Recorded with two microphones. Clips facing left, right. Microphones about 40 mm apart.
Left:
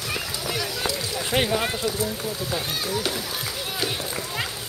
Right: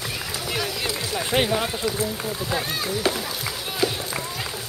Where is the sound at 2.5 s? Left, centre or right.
Right.